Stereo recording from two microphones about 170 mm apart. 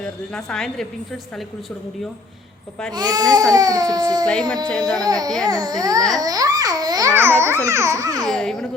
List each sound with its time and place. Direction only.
0.0 s a woman's voice: 5° left (ahead or behind)
2.9 s speech: 25° right (ahead or behind)
4.3 s a woman's voice: 5° left (ahead or behind)
4.9 s speech: 20° right (ahead or behind)
8.3 s a woman's voice: 5° left (ahead or behind)